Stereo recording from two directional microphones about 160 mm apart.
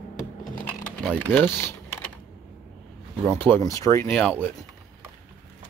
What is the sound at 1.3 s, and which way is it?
Speech, 15° left (ahead or behind).